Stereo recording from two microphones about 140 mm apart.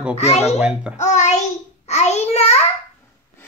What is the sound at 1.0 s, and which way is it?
Child singing, 55° left (ahead or behind).